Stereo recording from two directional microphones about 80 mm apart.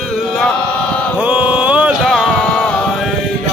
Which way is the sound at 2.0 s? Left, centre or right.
Centre.